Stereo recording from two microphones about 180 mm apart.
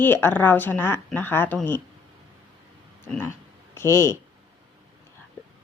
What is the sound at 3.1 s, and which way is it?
Speech, 10° left (ahead or behind).